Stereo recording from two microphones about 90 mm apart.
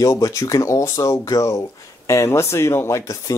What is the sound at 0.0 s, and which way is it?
Speech, 35° left (ahead or behind).